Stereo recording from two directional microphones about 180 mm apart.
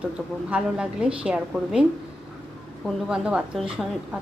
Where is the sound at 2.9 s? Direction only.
5° right (ahead or behind).